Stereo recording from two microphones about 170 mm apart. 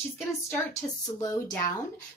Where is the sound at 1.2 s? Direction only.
20° left (ahead or behind).